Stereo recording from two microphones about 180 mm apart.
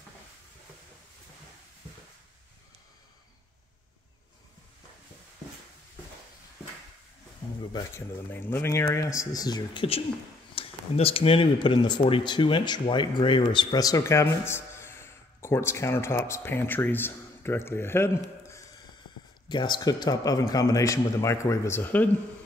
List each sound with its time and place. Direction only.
7.7 s speech: 15° left (ahead or behind)
19.5 s a man's voice: 25° left (ahead or behind)